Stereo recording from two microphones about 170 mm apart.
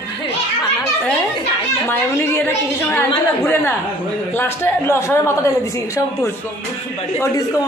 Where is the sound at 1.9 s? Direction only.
15° left (ahead or behind).